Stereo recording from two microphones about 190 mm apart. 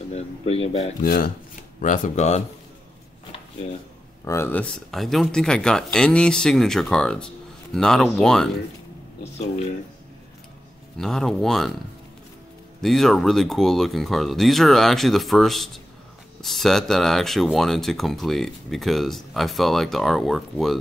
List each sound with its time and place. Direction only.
0.1 s speech: 30° left (ahead or behind)
1.0 s chopping: 50° left (ahead or behind)
1.8 s speech: 40° left (ahead or behind)
4.2 s speech: 15° left (ahead or behind)
11.0 s speech: 5° left (ahead or behind)
12.8 s speech: centre (ahead or behind)